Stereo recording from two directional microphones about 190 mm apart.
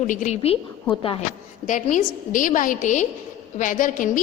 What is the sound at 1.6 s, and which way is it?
A woman's voice, 40° left (ahead or behind).